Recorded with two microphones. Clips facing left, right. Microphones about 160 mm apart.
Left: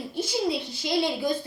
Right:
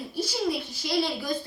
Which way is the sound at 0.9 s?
20° left (ahead or behind).